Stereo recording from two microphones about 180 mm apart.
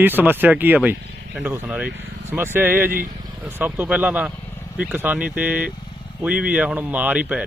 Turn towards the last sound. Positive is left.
turn(degrees=-5)  # may be behind; listen again after turning